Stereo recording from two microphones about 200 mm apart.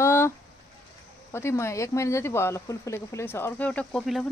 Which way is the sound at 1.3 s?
15° left (ahead or behind).